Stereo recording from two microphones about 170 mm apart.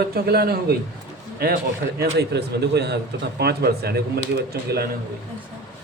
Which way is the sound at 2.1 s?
75° right (ahead or behind).